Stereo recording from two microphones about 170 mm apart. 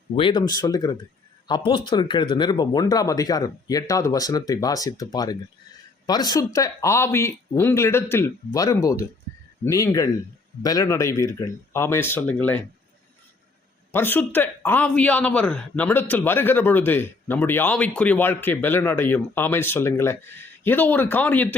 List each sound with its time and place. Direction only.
0.2 s speech: 30° left (ahead or behind); by 12.6 s 10° left (ahead or behind)
13.9 s speech: 10° left (ahead or behind)